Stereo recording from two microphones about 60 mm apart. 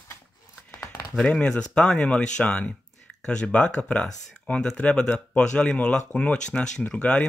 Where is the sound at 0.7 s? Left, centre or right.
Left.